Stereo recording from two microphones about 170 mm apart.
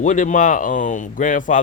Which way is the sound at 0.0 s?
45° left (ahead or behind).